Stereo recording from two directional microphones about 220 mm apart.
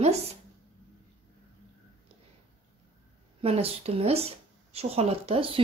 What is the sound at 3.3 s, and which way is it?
Speech, 25° right (ahead or behind).